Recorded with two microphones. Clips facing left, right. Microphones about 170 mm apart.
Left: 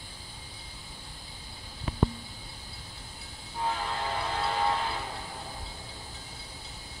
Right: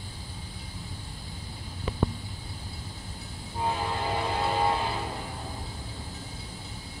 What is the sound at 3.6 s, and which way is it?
Train, 15° right (ahead or behind).